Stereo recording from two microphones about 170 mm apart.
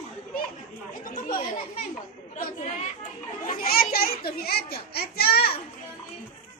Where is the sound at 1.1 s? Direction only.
50° left (ahead or behind).